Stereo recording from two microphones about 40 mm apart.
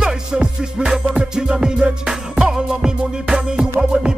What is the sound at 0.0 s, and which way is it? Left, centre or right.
Music, right.